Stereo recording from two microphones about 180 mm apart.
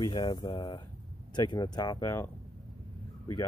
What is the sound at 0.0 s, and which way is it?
Speech, 25° left (ahead or behind).